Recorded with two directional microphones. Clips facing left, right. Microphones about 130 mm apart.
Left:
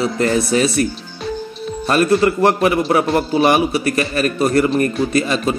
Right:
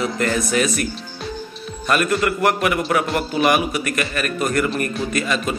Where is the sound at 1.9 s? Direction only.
30° left (ahead or behind).